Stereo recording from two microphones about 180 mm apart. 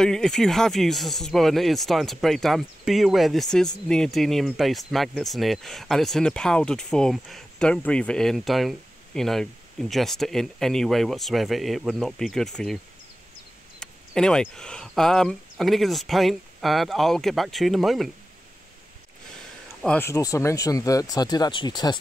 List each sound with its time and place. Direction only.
0.0 s speech: 5° left (ahead or behind)
13.7 s speech: 5° left (ahead or behind)
19.8 s speech: 10° left (ahead or behind)